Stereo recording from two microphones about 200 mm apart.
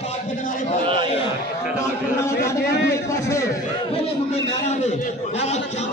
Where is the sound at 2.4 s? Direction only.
50° left (ahead or behind).